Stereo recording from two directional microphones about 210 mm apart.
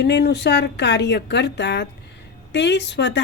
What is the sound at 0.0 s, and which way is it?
A woman's voice, 55° left (ahead or behind).